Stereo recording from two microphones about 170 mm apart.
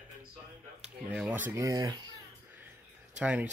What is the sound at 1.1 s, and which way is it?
Speech, 10° right (ahead or behind).